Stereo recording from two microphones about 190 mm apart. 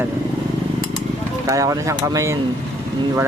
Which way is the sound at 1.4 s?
15° right (ahead or behind).